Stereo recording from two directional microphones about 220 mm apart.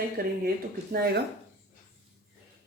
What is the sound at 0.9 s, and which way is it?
Speech, 45° right (ahead or behind).